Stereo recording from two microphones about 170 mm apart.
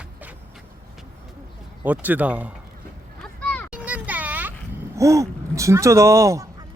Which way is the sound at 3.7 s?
10° right (ahead or behind).